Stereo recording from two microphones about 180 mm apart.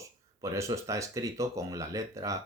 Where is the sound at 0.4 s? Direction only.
15° right (ahead or behind).